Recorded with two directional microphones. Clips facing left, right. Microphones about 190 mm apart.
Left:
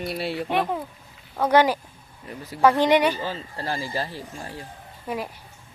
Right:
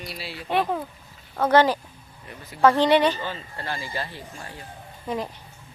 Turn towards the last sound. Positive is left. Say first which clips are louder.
# right 1 dB
turn(degrees=10)  # may be behind; listen again after turning